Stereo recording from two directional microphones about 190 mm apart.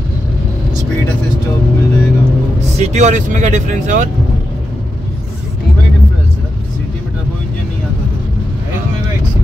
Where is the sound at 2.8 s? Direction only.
40° right (ahead or behind).